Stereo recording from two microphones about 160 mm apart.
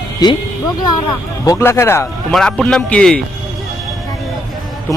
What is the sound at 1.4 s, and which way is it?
Speech, 20° left (ahead or behind).